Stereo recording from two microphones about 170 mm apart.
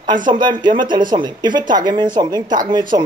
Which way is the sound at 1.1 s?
25° right (ahead or behind).